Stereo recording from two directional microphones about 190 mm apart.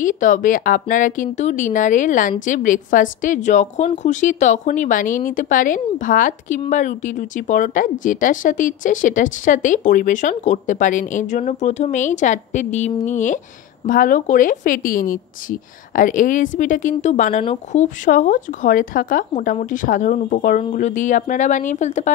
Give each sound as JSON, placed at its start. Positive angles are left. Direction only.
{"t": 0.0, "sound": "a woman's voice", "side_deg": 45}